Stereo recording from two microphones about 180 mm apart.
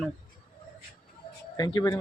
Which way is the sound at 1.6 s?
20° left (ahead or behind).